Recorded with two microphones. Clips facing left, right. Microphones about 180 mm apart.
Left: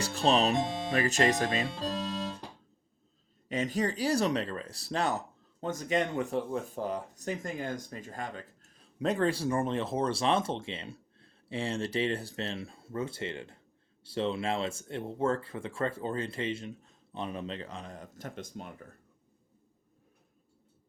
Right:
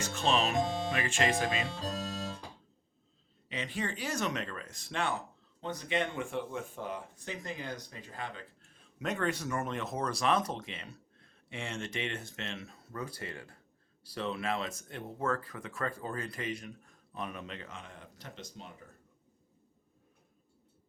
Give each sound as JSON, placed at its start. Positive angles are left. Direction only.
{"t": 0.0, "sound": "speech", "side_deg": 35}
{"t": 3.5, "sound": "speech", "side_deg": 40}